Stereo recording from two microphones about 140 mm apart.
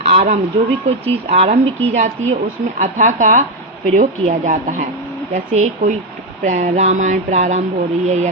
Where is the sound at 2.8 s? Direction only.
60° right (ahead or behind).